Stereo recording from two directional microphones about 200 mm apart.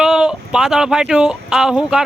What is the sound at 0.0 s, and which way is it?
Speech, 5° right (ahead or behind).